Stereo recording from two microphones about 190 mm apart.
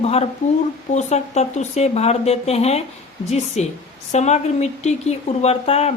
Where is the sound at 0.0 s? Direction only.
30° left (ahead or behind).